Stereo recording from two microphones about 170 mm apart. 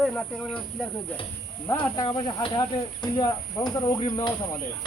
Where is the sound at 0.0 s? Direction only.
5° left (ahead or behind).